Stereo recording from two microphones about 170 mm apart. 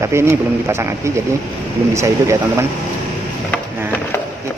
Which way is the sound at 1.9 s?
15° right (ahead or behind).